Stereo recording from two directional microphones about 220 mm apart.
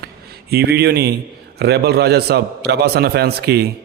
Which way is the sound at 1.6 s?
45° right (ahead or behind).